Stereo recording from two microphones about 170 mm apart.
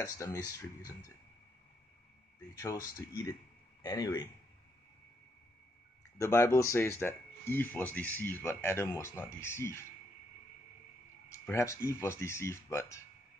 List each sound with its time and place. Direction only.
0.0 s speech: 20° left (ahead or behind)
2.5 s speech: 20° left (ahead or behind)
6.1 s speech: 15° left (ahead or behind)
11.2 s speech: 15° left (ahead or behind)